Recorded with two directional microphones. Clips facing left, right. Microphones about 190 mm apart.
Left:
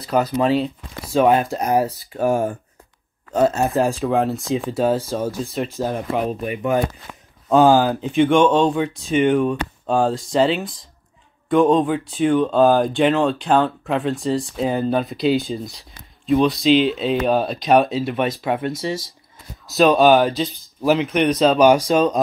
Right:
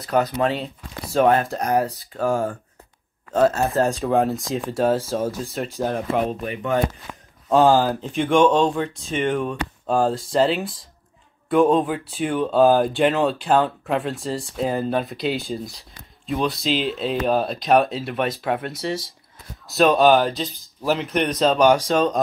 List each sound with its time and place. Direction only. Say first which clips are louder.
0.0 s speech: left 2 dB; centre (ahead or behind)
2.1 s speech: left 3 dB; 20° left (ahead or behind)
4.0 s speech: even; centre (ahead or behind)
6.4 s speech: left 3 dB; 15° left (ahead or behind)
7.4 s speech: left 2 dB; centre (ahead or behind)
21.6 s speech: left 3 dB; 15° left (ahead or behind)